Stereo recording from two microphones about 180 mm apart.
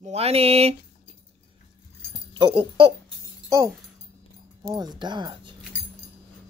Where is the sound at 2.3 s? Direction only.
25° right (ahead or behind).